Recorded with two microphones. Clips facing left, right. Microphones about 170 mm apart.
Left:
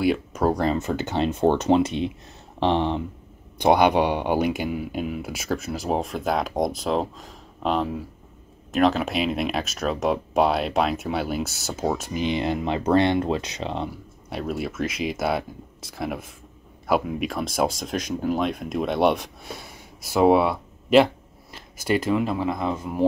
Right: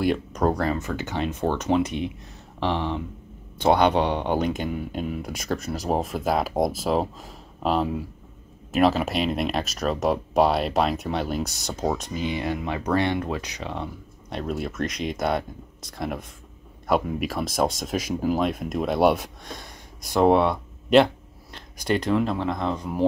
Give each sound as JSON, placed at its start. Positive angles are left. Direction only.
{"t": 0.0, "sound": "speech", "side_deg": 5}
{"t": 0.6, "sound": "speech", "side_deg": 25}
{"t": 3.5, "sound": "speech", "side_deg": 15}
{"t": 12.1, "sound": "speech", "side_deg": 20}
{"t": 14.3, "sound": "speech", "side_deg": 5}